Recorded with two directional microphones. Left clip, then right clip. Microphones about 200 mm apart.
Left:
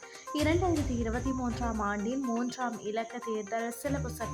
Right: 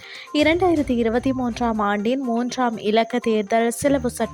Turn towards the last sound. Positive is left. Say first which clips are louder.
# right 15 dB
turn(degrees=-45)  # may be behind; listen again after turning